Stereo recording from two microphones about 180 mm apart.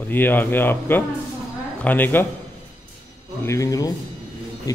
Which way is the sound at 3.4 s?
15° left (ahead or behind).